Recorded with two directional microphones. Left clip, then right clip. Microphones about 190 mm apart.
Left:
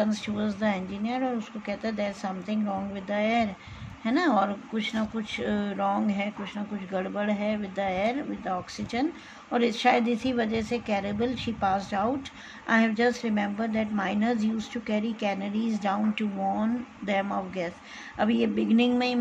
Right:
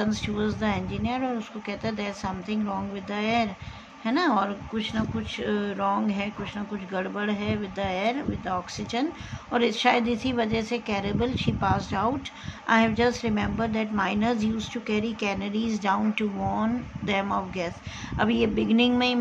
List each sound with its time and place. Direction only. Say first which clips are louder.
0.0 s a woman's voice: right 1 dB; centre (ahead or behind)